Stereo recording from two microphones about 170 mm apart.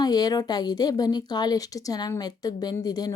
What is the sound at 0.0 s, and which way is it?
A woman's voice, 25° left (ahead or behind).